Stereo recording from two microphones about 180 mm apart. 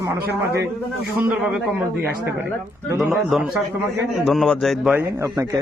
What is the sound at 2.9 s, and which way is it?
Speech, centre (ahead or behind).